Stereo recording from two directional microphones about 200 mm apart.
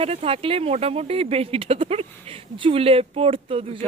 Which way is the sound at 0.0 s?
30° right (ahead or behind).